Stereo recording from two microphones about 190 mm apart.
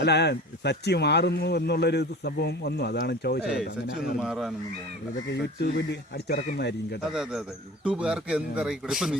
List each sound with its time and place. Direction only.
0.0 s speech: 60° left (ahead or behind)
3.4 s speech: 5° right (ahead or behind)
5.3 s speech: 60° left (ahead or behind)
7.1 s speech: 5° right (ahead or behind)